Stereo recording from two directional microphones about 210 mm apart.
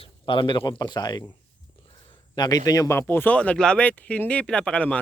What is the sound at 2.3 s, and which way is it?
A man's voice, 20° left (ahead or behind).